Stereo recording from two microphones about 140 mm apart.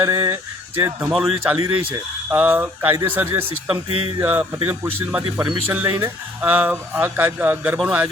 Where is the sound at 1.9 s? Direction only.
10° right (ahead or behind).